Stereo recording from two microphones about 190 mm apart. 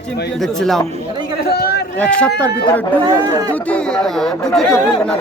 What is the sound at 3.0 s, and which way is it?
Speech, 20° right (ahead or behind).